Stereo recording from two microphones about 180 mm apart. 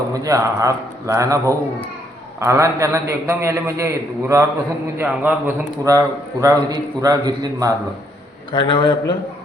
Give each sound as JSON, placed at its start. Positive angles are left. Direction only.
{"t": 0.1, "sound": "a man's voice", "side_deg": -20}
{"t": 8.5, "sound": "a man's voice", "side_deg": 25}